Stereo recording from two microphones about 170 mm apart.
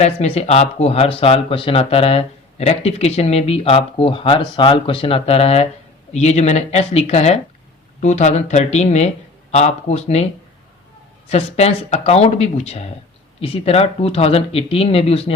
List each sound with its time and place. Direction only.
0.0 s speech: 40° left (ahead or behind)
11.3 s speech: 40° left (ahead or behind)